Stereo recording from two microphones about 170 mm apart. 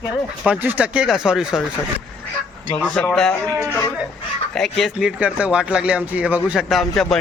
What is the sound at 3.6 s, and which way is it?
Speech, 15° left (ahead or behind).